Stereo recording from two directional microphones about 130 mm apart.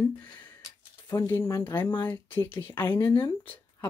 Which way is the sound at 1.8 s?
35° left (ahead or behind).